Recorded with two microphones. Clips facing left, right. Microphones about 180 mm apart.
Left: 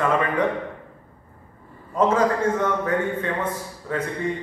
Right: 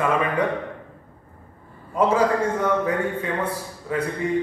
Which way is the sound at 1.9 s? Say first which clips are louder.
Even; 10° right (ahead or behind).